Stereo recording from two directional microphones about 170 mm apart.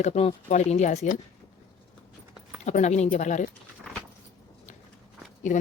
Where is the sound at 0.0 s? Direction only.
40° left (ahead or behind).